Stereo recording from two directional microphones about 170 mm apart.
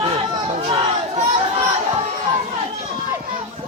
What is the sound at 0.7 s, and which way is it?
Crowd, 30° right (ahead or behind).